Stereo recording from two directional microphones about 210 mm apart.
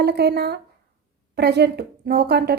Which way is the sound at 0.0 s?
50° right (ahead or behind).